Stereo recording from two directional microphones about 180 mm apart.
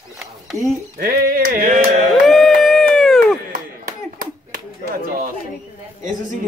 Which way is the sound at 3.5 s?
50° right (ahead or behind).